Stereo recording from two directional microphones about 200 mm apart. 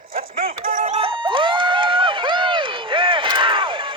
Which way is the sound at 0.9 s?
25° right (ahead or behind).